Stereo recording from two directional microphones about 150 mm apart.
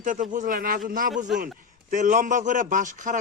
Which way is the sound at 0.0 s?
60° right (ahead or behind).